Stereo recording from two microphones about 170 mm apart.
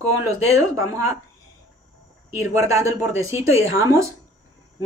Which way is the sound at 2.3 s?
20° right (ahead or behind).